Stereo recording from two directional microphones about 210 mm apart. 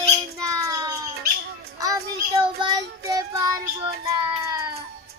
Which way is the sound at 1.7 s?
15° right (ahead or behind).